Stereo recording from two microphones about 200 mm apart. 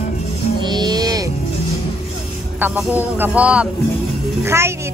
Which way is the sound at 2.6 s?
10° right (ahead or behind).